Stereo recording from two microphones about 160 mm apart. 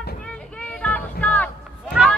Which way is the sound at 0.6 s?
10° left (ahead or behind).